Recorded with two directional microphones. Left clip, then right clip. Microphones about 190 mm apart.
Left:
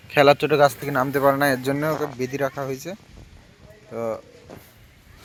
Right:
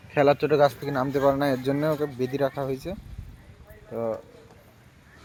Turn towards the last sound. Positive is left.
turn(degrees=0)  # may be behind; listen again after turning